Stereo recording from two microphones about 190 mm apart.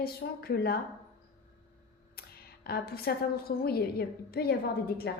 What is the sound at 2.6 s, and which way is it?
A woman's voice, 55° left (ahead or behind).